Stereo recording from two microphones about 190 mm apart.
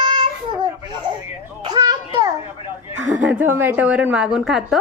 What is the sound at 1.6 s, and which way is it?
Children playing, 20° right (ahead or behind).